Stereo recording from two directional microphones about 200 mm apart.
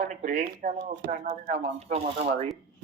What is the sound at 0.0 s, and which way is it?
Speech, 40° right (ahead or behind).